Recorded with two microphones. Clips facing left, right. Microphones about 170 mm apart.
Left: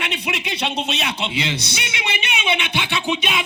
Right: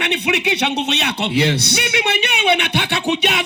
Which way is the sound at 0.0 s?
70° right (ahead or behind).